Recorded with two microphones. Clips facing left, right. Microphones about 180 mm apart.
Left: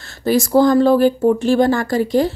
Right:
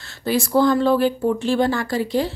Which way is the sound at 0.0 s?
45° left (ahead or behind).